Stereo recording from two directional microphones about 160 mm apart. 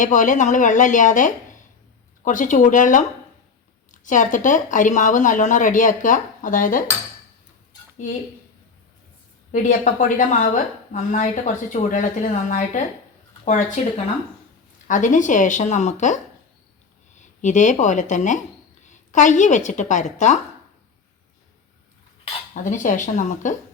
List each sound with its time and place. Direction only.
0.0 s a woman's voice: 55° left (ahead or behind)
9.5 s a woman's voice: 50° left (ahead or behind)
14.8 s a woman's voice: 50° left (ahead or behind)
22.5 s a woman's voice: 55° left (ahead or behind)